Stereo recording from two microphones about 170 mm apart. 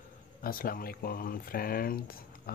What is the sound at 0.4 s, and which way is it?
Speech, 60° left (ahead or behind).